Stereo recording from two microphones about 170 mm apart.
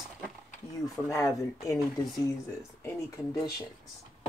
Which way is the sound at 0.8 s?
15° left (ahead or behind).